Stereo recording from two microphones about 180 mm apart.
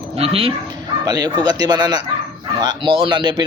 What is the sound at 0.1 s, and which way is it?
Speech, 35° right (ahead or behind).